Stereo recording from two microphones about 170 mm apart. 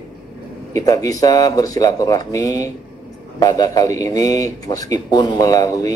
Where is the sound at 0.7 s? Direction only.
20° left (ahead or behind).